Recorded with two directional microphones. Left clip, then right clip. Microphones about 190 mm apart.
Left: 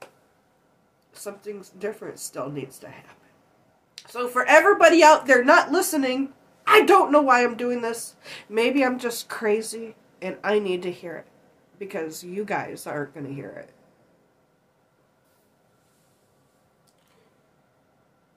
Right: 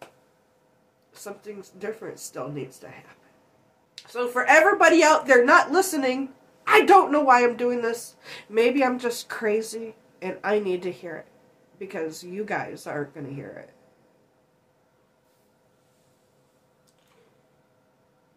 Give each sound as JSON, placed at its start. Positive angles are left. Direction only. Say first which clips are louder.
{"t": 1.1, "sound": "speech", "louder": "left 3 dB", "side_deg": 20}